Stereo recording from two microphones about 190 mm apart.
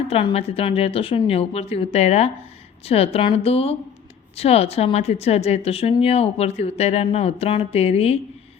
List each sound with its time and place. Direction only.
0.1 s a woman's voice: 30° left (ahead or behind)